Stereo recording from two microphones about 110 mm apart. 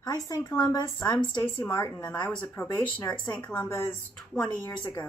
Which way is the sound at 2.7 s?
35° left (ahead or behind).